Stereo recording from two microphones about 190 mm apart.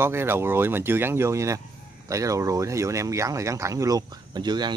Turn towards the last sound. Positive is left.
turn(degrees=-20)  # may be behind; listen again after turning